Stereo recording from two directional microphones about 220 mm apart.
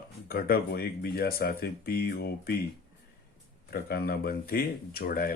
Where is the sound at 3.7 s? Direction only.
45° left (ahead or behind).